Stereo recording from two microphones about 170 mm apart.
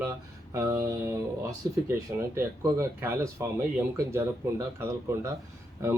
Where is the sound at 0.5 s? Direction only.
20° right (ahead or behind).